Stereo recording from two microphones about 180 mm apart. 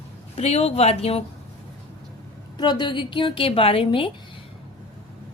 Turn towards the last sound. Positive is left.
turn(degrees=30)  # may be behind; listen again after turning